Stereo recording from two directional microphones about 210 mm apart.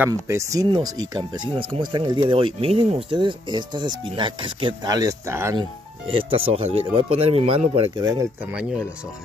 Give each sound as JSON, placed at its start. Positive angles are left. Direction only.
{"t": 0.0, "sound": "speech", "side_deg": -15}
{"t": 5.6, "sound": "speech", "side_deg": -25}
{"t": 8.5, "sound": "speech", "side_deg": -5}